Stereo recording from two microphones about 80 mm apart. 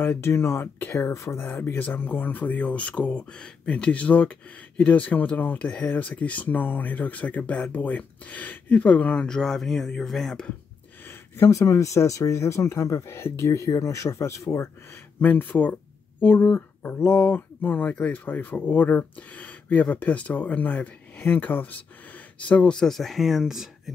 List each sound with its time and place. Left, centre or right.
0.0 s speech: left
0.9 s speech: left; by 10.5 s centre
11.1 s speech: left
15.1 s speech: left; by 23.7 s centre